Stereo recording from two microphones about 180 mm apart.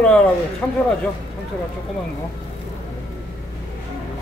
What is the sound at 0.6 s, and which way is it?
Speech, 10° left (ahead or behind).